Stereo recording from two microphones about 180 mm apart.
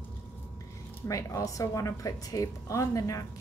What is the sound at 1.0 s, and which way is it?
Speech, 20° left (ahead or behind).